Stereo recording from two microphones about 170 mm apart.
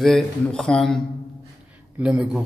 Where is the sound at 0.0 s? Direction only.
5° left (ahead or behind).